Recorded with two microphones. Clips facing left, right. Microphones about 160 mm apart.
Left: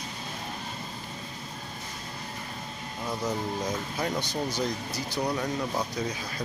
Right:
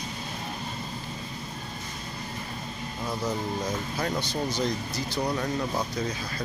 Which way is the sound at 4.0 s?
15° left (ahead or behind).